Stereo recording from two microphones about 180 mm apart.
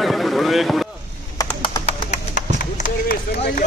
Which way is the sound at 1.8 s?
40° left (ahead or behind).